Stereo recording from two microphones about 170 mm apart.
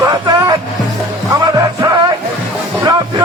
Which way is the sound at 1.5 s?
20° right (ahead or behind).